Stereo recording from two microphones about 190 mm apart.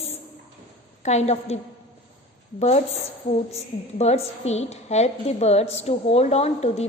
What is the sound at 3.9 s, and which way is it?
A woman's voice, 35° left (ahead or behind).